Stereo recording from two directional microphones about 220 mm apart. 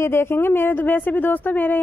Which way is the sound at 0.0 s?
10° left (ahead or behind).